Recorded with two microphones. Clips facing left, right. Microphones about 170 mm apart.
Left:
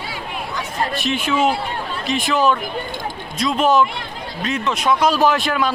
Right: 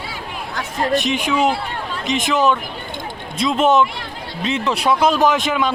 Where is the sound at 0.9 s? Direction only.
15° right (ahead or behind).